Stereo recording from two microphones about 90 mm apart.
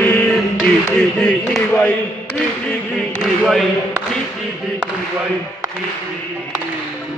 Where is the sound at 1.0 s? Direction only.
10° left (ahead or behind).